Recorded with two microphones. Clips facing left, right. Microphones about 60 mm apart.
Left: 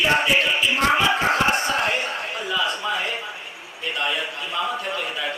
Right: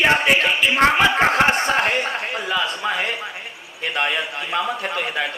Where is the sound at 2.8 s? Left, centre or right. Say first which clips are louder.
Right 2 dB; right.